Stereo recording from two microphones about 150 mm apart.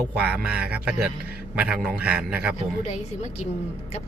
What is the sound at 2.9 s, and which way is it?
Speech, 50° left (ahead or behind).